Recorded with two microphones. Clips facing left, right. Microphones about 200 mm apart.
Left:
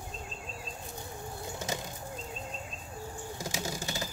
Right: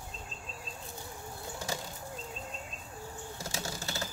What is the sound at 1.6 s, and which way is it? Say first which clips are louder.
Bird flight: left 1 dB; 20° left (ahead or behind).